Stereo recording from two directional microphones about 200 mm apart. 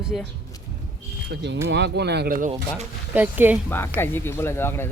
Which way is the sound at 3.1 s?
10° right (ahead or behind).